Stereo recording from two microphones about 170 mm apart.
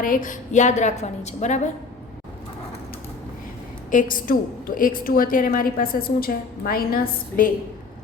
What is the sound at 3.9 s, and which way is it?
A woman's voice, 50° left (ahead or behind).